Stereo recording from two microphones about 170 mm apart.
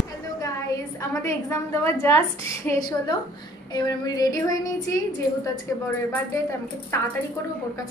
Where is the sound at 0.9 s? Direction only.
15° left (ahead or behind).